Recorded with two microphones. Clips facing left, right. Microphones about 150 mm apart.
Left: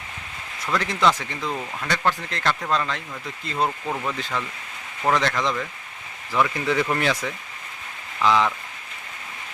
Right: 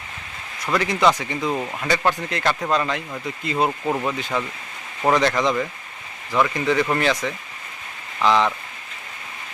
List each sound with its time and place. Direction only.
0.6 s speech: 10° right (ahead or behind)
1.5 s speech: 25° right (ahead or behind)
1.9 s speech: 10° right (ahead or behind)
6.3 s speech: centre (ahead or behind)